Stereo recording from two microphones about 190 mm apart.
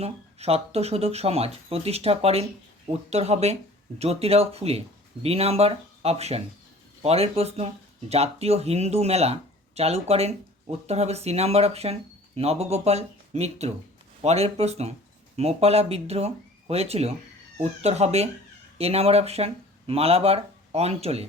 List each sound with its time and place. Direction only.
0.0 s speech: 35° right (ahead or behind)